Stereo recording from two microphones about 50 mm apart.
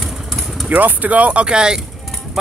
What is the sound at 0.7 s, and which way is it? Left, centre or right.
Speech, right.